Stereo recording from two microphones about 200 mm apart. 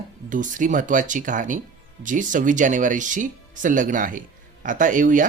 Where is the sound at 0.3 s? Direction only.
40° right (ahead or behind).